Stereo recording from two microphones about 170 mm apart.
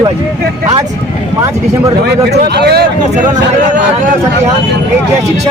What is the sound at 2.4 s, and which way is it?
Speech, 75° right (ahead or behind).